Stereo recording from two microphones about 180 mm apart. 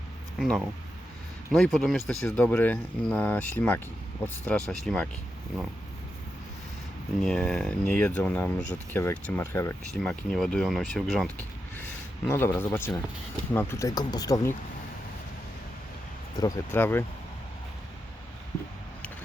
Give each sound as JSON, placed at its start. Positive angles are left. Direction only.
{"t": 0.3, "sound": "speech", "side_deg": 0}
{"t": 7.2, "sound": "speech", "side_deg": 5}
{"t": 9.9, "sound": "speech", "side_deg": 0}
{"t": 12.3, "sound": "speech", "side_deg": 10}
{"t": 16.4, "sound": "speech", "side_deg": 20}